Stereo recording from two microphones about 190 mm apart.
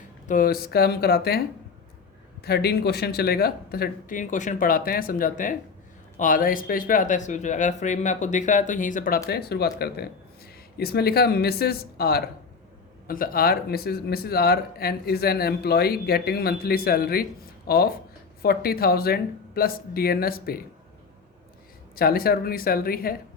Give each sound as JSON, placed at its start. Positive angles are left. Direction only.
{"t": 0.3, "sound": "speech", "side_deg": 50}
{"t": 2.4, "sound": "speech", "side_deg": 60}
{"t": 21.9, "sound": "speech", "side_deg": 50}